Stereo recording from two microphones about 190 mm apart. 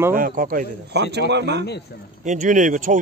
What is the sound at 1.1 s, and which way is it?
Speech, 65° right (ahead or behind).